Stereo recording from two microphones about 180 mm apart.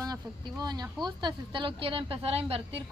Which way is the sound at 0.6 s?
20° right (ahead or behind).